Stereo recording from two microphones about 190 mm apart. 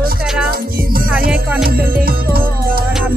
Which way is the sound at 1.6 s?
50° right (ahead or behind).